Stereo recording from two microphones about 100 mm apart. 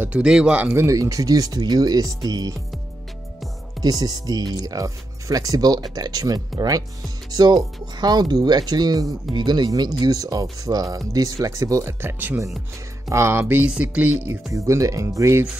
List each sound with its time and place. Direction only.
0.0 s music: 10° right (ahead or behind)
0.9 s speech: 35° right (ahead or behind)
3.8 s speech: 40° right (ahead or behind); by 12.4 s 20° right (ahead or behind)
13.1 s music: 25° right (ahead or behind)
14.5 s speech: 35° right (ahead or behind)